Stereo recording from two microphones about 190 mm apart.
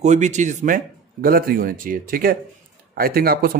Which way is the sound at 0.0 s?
40° right (ahead or behind).